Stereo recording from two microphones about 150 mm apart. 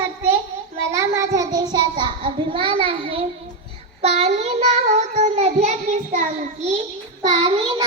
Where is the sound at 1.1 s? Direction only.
20° right (ahead or behind).